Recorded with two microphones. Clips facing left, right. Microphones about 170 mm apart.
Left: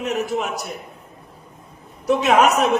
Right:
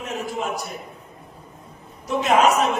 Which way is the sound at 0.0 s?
75° left (ahead or behind).